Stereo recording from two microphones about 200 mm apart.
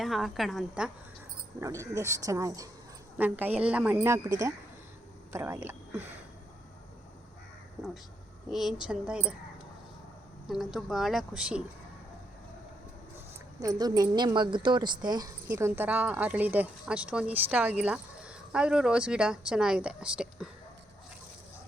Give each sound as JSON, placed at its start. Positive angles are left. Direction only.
{"t": 0.0, "sound": "speech", "side_deg": 0}
{"t": 1.6, "sound": "a woman's voice", "side_deg": -15}
{"t": 7.8, "sound": "speech", "side_deg": 0}
{"t": 10.5, "sound": "speech", "side_deg": 0}
{"t": 13.1, "sound": "speech", "side_deg": -15}
{"t": 15.4, "sound": "speech", "side_deg": -10}